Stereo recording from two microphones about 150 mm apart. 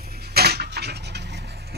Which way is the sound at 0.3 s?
90° right.